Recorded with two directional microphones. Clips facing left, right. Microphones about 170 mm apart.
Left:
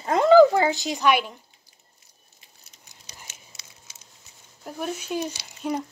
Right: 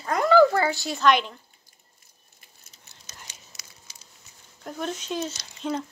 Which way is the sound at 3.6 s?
30° left (ahead or behind).